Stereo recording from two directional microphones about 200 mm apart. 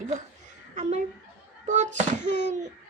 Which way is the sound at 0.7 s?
35° right (ahead or behind).